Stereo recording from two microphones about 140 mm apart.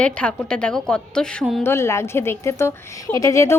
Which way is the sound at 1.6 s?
20° left (ahead or behind).